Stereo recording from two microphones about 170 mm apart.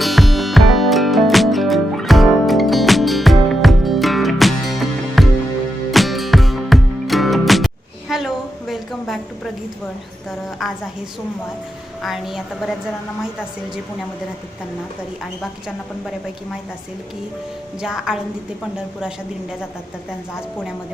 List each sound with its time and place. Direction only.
0.0 s music: centre (ahead or behind)
8.1 s a sound: centre (ahead or behind)
12.0 s a woman's voice: centre (ahead or behind)
17.8 s a woman's voice: 5° right (ahead or behind)